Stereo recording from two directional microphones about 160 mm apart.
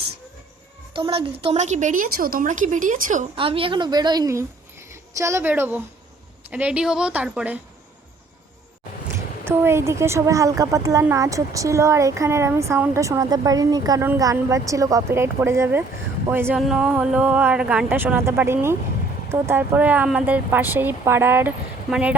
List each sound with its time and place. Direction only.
0.9 s a woman's voice: 35° right (ahead or behind); by 3.2 s 50° right (ahead or behind)
3.3 s a woman's voice: 35° right (ahead or behind); by 7.6 s 10° right (ahead or behind)
9.1 s a woman's voice: 15° right (ahead or behind)